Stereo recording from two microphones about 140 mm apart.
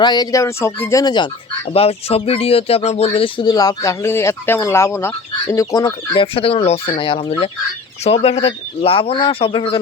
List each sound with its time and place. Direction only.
0.0 s speech: 30° left (ahead or behind)
1.7 s speech: 45° left (ahead or behind); by 6.2 s 25° left (ahead or behind)
6.3 s speech: 40° left (ahead or behind)